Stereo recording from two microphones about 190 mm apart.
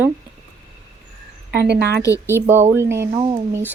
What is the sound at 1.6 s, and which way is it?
Speech, 60° right (ahead or behind).